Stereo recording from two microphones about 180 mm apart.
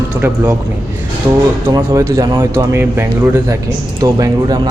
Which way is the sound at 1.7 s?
20° right (ahead or behind).